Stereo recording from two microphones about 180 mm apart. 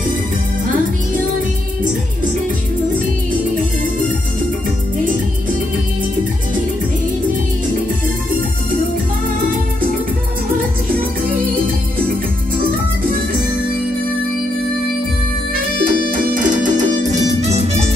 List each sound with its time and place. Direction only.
16.1 s music: 45° right (ahead or behind)